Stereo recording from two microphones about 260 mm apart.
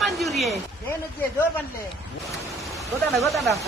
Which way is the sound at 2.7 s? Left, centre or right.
Centre.